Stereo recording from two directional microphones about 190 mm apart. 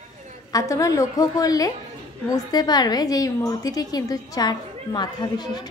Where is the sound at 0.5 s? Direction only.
15° left (ahead or behind).